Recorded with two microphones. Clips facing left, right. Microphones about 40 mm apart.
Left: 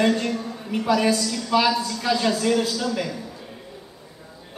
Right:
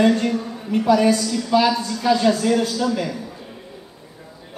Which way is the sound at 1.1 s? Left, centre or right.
Centre.